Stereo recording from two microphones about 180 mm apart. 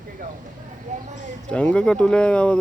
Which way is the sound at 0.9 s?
40° right (ahead or behind).